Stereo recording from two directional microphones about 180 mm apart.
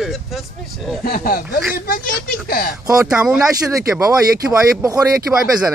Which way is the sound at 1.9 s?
55° left (ahead or behind).